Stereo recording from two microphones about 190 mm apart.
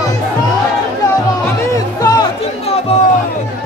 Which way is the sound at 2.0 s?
20° left (ahead or behind).